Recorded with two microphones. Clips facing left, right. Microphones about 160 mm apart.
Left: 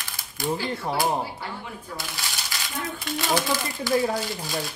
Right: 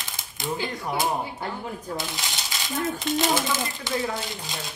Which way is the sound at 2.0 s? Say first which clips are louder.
Right 2 dB; 20° right (ahead or behind).